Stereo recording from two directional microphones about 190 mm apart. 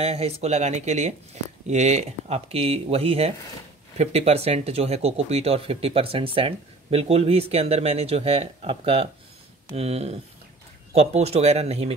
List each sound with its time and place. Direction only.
0.0 s speech: 35° right (ahead or behind)